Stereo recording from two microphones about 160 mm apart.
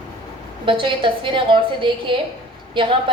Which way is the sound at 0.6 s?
30° right (ahead or behind).